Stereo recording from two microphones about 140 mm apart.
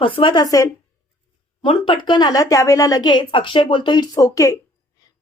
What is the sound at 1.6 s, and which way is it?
A woman's voice, 35° left (ahead or behind).